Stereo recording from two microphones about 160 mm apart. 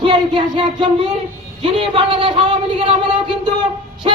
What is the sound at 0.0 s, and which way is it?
Speech, 30° right (ahead or behind).